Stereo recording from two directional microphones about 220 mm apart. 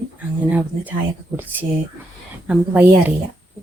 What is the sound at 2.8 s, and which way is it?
Speech, 5° right (ahead or behind).